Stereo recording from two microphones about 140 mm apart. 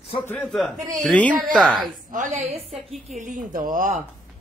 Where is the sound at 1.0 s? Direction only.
10° left (ahead or behind).